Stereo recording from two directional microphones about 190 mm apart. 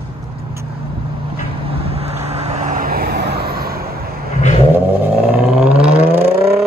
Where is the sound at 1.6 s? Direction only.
30° right (ahead or behind); by 4.0 s 55° right (ahead or behind).